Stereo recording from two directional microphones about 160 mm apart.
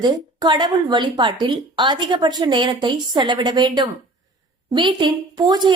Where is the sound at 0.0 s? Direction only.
25° right (ahead or behind).